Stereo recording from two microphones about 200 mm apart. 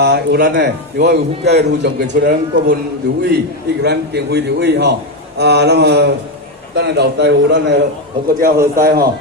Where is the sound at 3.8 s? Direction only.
55° right (ahead or behind).